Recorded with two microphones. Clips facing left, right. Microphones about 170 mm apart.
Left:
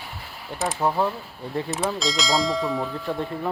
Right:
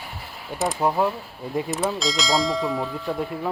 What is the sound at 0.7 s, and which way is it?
Speech, 10° right (ahead or behind).